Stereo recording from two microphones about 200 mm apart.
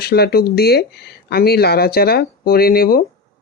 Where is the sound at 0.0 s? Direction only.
50° left (ahead or behind).